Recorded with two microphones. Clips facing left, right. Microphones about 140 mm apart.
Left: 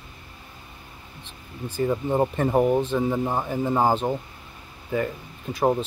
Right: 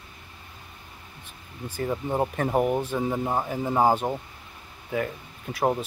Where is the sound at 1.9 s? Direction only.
5° right (ahead or behind).